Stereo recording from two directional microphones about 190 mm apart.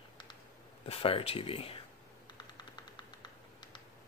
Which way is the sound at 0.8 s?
30° left (ahead or behind).